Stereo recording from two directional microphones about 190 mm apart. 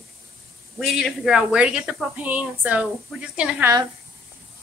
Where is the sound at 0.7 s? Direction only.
Centre (ahead or behind).